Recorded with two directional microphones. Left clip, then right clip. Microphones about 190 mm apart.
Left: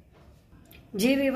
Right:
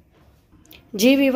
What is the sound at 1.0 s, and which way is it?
Speech, 50° right (ahead or behind).